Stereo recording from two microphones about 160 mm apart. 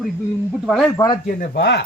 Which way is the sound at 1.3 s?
75° left (ahead or behind).